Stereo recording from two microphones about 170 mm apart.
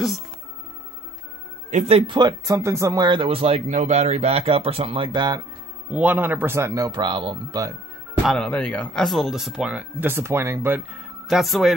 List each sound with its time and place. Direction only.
1.7 s speech: 40° right (ahead or behind)
5.9 s speech: 10° right (ahead or behind); by 7.7 s 25° right (ahead or behind)
8.2 s speech: centre (ahead or behind)
11.2 s speech: centre (ahead or behind)